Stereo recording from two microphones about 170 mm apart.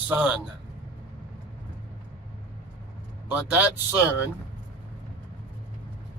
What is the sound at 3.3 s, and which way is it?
Speech, 10° right (ahead or behind).